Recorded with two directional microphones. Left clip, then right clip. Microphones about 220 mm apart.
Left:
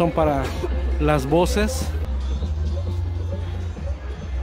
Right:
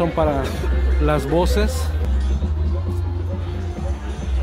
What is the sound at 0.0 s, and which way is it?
Speech, 15° left (ahead or behind).